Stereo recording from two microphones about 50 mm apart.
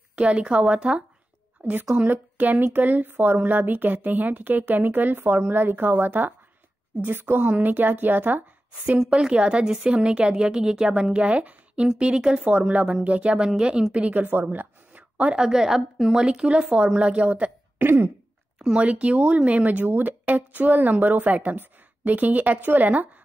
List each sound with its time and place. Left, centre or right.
0.1 s speech: right
1.6 s a woman's voice: right; by 13.8 s centre
14.1 s a sound: right
15.3 s speech: centre
17.7 s throat clearing: right
18.6 s speech: centre; by 23.0 s right